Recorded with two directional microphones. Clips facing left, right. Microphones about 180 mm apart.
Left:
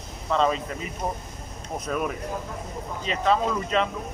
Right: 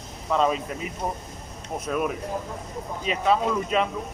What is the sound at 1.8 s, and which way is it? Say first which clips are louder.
Speech: right 2 dB; 5° right (ahead or behind).